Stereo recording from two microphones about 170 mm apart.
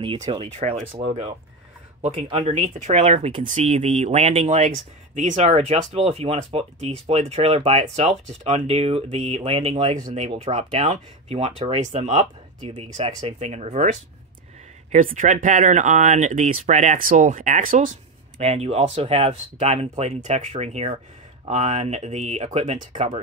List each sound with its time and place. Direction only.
0.0 s speech: 30° right (ahead or behind)
2.0 s speech: 40° right (ahead or behind)
3.4 s speech: 45° right (ahead or behind)
14.9 s speech: 50° right (ahead or behind)
18.4 s speech: 40° right (ahead or behind)